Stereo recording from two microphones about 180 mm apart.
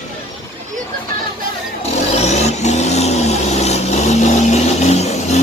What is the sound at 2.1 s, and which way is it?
Vehicle, 40° left (ahead or behind).